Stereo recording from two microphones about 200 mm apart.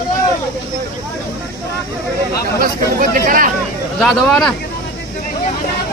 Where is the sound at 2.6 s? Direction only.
45° right (ahead or behind).